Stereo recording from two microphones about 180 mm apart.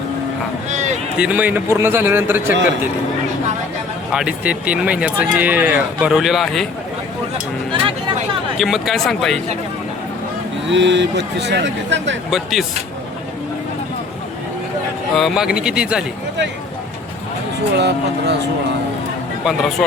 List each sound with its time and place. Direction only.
0.7 s a sound: 40° right (ahead or behind)
1.2 s speech: 10° right (ahead or behind)
4.1 s speech: 5° right (ahead or behind)
7.7 s a sound: 30° right (ahead or behind)
8.5 s speech: centre (ahead or behind)
10.7 s speech: 80° right
12.3 s speech: centre (ahead or behind)
15.1 s speech: centre (ahead or behind)
17.7 s speech: 70° right (ahead or behind)